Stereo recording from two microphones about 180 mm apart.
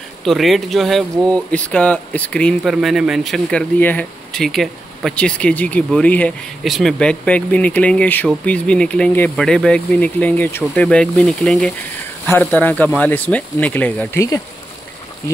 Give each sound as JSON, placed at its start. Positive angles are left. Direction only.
{"t": 0.2, "sound": "speech", "side_deg": 0}